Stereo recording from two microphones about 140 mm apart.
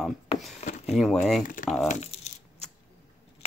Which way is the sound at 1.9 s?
55° left (ahead or behind).